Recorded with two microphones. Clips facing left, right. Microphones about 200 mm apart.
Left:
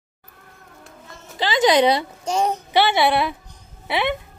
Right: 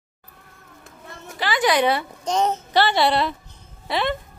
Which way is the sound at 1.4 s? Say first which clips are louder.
Left 4 dB; 20° left (ahead or behind).